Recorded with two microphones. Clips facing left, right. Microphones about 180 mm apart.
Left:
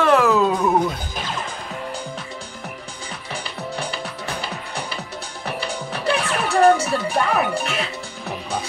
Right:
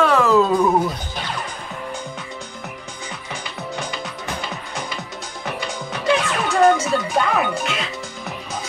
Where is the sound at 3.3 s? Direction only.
30° left (ahead or behind).